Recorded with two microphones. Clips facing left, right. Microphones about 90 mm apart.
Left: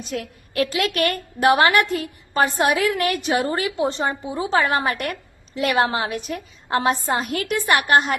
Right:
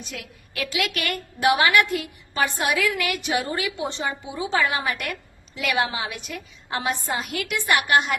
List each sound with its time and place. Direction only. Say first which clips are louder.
0.1 s a woman's voice: left 8 dB; 40° left (ahead or behind)